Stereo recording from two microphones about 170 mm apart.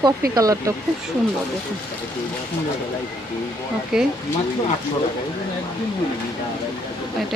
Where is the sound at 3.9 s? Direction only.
5° right (ahead or behind).